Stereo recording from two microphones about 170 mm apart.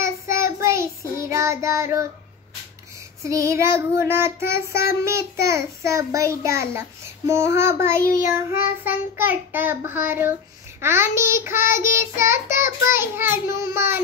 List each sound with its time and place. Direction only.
0.0 s child singing: 15° right (ahead or behind)
3.3 s child singing: 20° right (ahead or behind)
8.0 s child singing: 55° left (ahead or behind)
8.4 s child singing: 15° right (ahead or behind)